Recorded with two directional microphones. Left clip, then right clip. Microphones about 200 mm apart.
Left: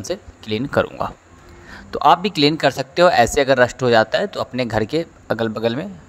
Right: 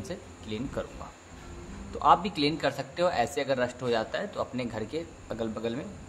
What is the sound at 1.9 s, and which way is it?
A man's voice, 45° left (ahead or behind).